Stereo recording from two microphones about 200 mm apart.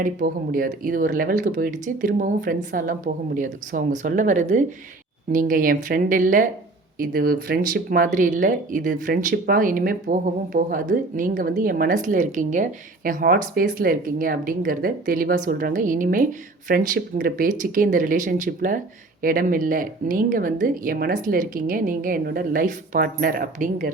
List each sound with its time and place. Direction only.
0.0 s speech: 45° right (ahead or behind)